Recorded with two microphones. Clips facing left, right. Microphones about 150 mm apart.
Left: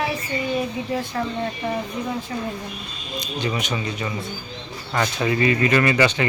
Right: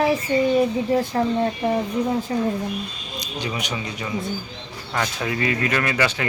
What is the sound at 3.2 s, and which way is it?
Speech, 10° right (ahead or behind).